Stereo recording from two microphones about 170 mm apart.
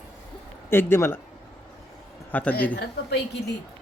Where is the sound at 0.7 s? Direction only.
15° left (ahead or behind).